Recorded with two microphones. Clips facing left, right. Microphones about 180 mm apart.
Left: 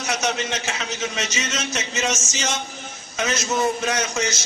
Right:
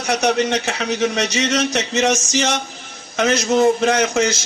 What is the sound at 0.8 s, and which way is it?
A man's voice, 60° right (ahead or behind).